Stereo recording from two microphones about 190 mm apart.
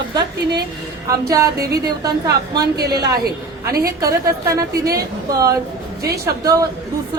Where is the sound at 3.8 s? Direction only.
15° right (ahead or behind).